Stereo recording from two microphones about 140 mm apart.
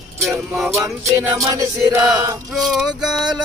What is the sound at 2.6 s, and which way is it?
Music, centre (ahead or behind).